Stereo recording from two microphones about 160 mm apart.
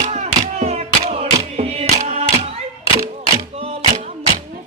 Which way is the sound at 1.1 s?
40° right (ahead or behind).